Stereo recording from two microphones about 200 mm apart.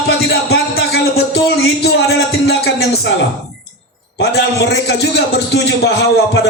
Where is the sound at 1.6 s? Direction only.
55° left (ahead or behind).